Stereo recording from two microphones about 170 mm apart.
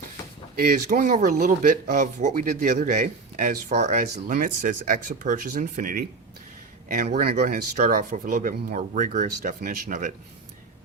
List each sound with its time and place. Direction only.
0.5 s speech: 60° right (ahead or behind)